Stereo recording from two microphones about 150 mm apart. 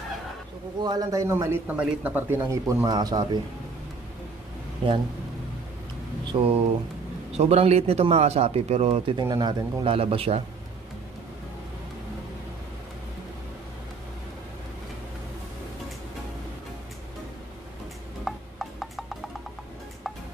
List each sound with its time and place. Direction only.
0.7 s a man's voice: 25° right (ahead or behind)
6.3 s speech: 35° right (ahead or behind)
7.3 s speech: 45° right (ahead or behind)
9.1 s speech: 30° right (ahead or behind)
18.2 s a sound: centre (ahead or behind)